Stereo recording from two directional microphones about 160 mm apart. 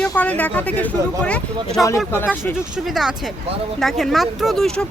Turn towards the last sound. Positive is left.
turn(degrees=5)  # may be behind; listen again after turning